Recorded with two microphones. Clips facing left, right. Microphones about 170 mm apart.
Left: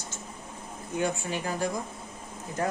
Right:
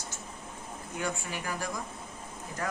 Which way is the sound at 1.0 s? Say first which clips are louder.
Left 6 dB; 25° left (ahead or behind).